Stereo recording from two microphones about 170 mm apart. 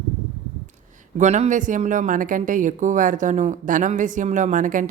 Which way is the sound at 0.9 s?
45° right (ahead or behind).